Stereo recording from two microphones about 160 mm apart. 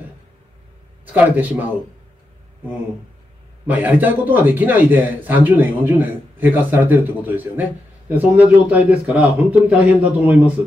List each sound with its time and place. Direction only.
1.0 s a man's voice: 10° right (ahead or behind)
3.6 s a man's voice: 10° right (ahead or behind)